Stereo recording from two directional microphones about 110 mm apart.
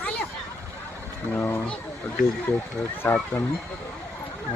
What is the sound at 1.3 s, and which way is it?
Speech, 20° left (ahead or behind).